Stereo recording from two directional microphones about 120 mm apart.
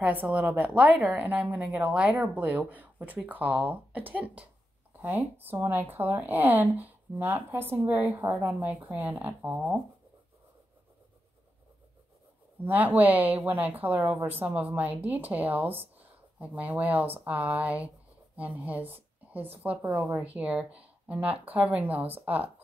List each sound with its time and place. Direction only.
0.0 s a woman's voice: 15° right (ahead or behind)
12.6 s a woman's voice: 15° right (ahead or behind)